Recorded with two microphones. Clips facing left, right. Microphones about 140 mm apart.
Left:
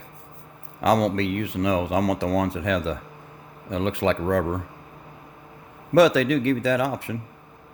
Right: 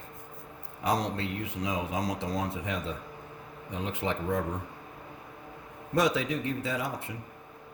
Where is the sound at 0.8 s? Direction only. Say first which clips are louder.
Left 9 dB; 75° left (ahead or behind).